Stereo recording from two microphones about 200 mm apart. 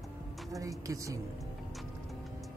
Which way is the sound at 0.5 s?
15° right (ahead or behind).